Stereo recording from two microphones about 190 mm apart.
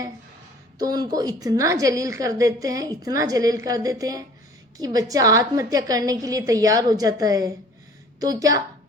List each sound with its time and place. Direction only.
0.8 s a woman's voice: 20° right (ahead or behind)